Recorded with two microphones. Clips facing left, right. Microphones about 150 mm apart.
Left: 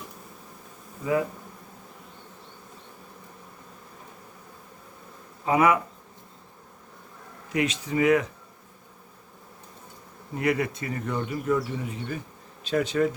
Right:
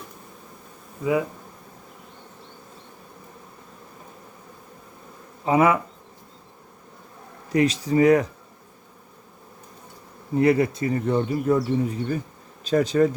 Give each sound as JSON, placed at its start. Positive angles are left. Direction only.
{"t": 5.5, "sound": "speech", "side_deg": -30}
{"t": 7.5, "sound": "speech", "side_deg": -35}
{"t": 10.3, "sound": "speech", "side_deg": -30}